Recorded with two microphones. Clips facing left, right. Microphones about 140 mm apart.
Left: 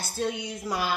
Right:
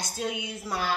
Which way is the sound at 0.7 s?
10° left (ahead or behind).